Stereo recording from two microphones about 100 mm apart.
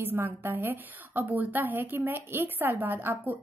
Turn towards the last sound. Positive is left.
turn(degrees=-20)  # may be behind; listen again after turning